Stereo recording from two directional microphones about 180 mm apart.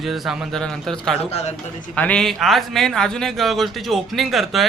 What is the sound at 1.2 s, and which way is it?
Speech, 35° left (ahead or behind).